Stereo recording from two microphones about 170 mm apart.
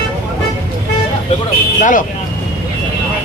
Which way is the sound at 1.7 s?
50° left (ahead or behind).